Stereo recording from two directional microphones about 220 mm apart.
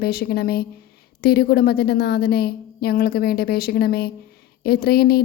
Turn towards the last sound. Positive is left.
turn(degrees=45)  # may be behind; listen again after turning